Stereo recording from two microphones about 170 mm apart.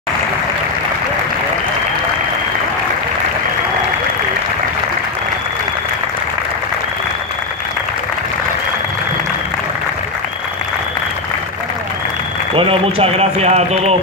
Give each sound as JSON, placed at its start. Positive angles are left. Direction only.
{"t": 12.5, "sound": "speech", "side_deg": -35}